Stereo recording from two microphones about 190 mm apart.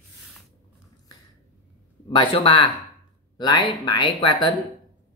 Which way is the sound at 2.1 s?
25° left (ahead or behind).